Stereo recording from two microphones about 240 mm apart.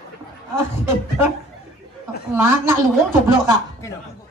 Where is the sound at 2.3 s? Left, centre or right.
Centre.